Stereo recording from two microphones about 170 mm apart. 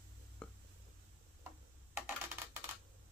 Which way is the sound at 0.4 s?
5° left (ahead or behind).